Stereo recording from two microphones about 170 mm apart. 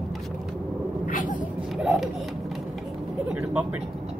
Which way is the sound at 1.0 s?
50° left (ahead or behind).